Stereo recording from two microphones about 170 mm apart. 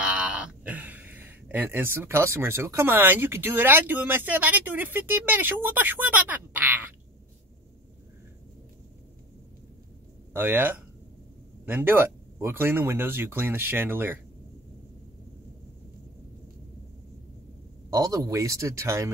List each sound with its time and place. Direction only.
0.0 s speech: 5° right (ahead or behind)
10.3 s speech: 10° right (ahead or behind)
17.8 s speech: 20° right (ahead or behind)